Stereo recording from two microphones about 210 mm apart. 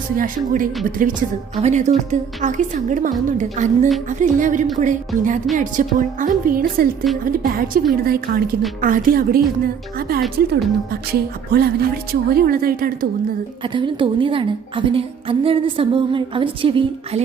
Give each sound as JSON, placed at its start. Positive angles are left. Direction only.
{"t": 0.2, "sound": "a woman's voice", "side_deg": -40}
{"t": 7.3, "sound": "music", "side_deg": -40}
{"t": 13.7, "sound": "a woman's voice", "side_deg": -25}